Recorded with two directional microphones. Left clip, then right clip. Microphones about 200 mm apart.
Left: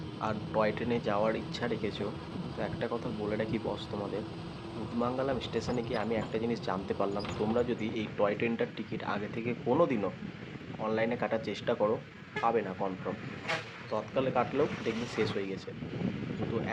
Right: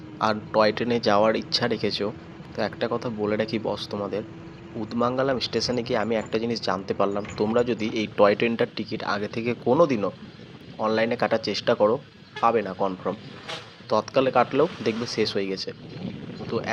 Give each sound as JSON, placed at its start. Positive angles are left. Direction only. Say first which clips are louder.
{"t": 0.2, "sound": "speech", "louder": "right 10 dB", "side_deg": -20}
{"t": 4.9, "sound": "speech", "louder": "right 9 dB", "side_deg": -20}